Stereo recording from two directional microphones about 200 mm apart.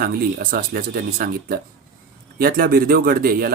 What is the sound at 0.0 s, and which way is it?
Speech, 50° right (ahead or behind).